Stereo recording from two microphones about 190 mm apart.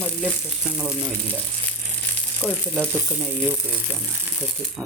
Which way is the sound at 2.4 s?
Centre (ahead or behind).